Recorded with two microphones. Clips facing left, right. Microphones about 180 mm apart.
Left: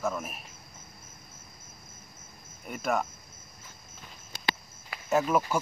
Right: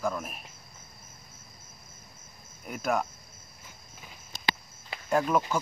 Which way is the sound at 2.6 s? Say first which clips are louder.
Even; centre (ahead or behind).